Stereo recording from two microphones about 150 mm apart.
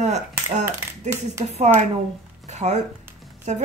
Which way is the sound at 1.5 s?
50° right (ahead or behind).